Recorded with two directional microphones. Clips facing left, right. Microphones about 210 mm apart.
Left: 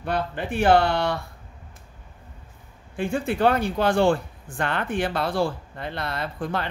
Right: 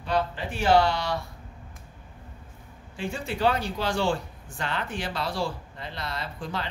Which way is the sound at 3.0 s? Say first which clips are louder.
Left 5 dB; 55° left (ahead or behind).